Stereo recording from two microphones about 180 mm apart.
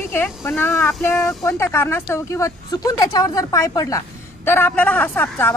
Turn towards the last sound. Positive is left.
turn(degrees=10)  # may be behind; listen again after turning